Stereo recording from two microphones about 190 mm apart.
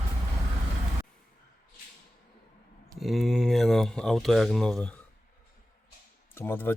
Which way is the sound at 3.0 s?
Centre (ahead or behind).